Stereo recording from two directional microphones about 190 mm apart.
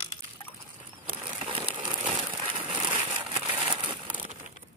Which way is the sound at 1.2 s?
30° right (ahead or behind).